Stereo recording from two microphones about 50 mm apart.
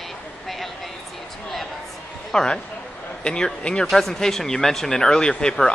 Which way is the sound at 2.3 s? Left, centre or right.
Centre.